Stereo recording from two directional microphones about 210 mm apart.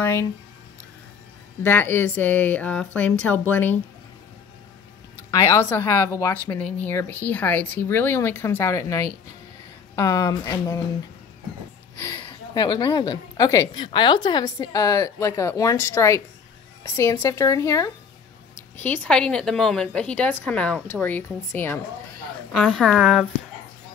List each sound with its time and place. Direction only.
0.0 s a woman's voice: 10° left (ahead or behind)
1.6 s a woman's voice: 10° left (ahead or behind)
5.3 s a woman's voice: 15° left (ahead or behind)
12.0 s a woman's voice: 20° left (ahead or behind); by 23.2 s centre (ahead or behind)